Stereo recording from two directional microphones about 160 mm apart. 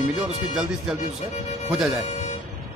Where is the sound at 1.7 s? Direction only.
5° right (ahead or behind).